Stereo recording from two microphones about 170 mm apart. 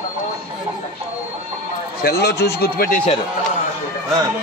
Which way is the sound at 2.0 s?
75° left (ahead or behind).